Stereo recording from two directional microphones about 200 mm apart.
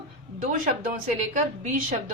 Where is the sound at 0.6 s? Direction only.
40° right (ahead or behind).